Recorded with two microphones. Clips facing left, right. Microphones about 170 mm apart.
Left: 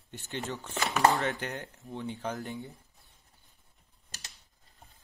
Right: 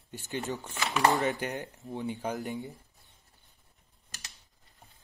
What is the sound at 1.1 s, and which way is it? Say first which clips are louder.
Speech: right 2 dB; 20° right (ahead or behind).